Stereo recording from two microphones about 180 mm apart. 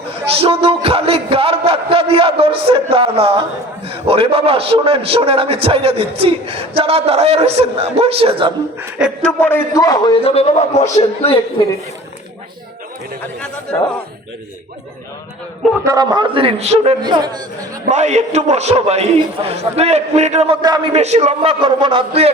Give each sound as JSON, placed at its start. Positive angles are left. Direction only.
{"t": 0.3, "sound": "a man's voice", "side_deg": -30}
{"t": 9.2, "sound": "a man's voice", "side_deg": 10}
{"t": 13.2, "sound": "a man's voice", "side_deg": 5}
{"t": 15.8, "sound": "a man's voice", "side_deg": -20}
{"t": 17.0, "sound": "a man's voice", "side_deg": -25}
{"t": 17.9, "sound": "a man's voice", "side_deg": -40}
{"t": 20.6, "sound": "a man's voice", "side_deg": -20}
{"t": 20.9, "sound": "a man's voice", "side_deg": -35}